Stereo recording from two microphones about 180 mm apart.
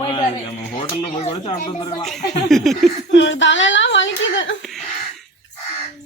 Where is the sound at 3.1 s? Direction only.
90° left.